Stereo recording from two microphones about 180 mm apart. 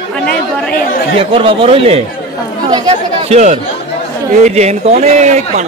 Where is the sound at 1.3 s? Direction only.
30° right (ahead or behind).